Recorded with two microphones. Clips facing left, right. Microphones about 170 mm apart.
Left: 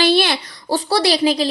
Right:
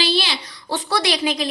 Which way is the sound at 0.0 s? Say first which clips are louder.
Left 7 dB; 55° left (ahead or behind).